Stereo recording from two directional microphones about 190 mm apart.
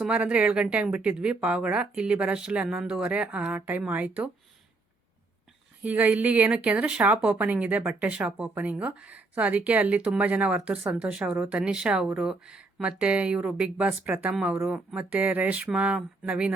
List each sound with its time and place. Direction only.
0.0 s a woman's voice: 5° right (ahead or behind)
5.8 s a woman's voice: 10° right (ahead or behind)